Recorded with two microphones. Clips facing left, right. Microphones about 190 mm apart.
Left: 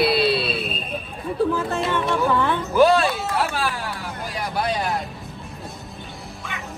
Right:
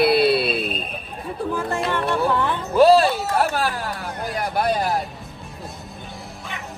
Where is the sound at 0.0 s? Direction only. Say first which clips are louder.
Right 3 dB; 55° right (ahead or behind).